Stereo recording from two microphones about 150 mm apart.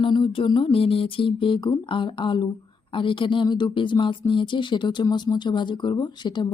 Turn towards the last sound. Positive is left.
turn(degrees=30)  # may be behind; listen again after turning